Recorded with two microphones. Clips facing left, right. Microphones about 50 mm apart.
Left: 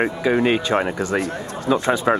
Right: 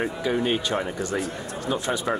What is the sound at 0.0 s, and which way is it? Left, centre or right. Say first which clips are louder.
Speech: left 6 dB; left.